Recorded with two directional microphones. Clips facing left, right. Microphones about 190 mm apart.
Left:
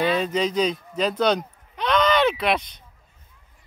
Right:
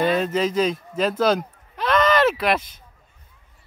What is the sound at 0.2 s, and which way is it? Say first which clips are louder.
Speech: right 1 dB; 5° right (ahead or behind).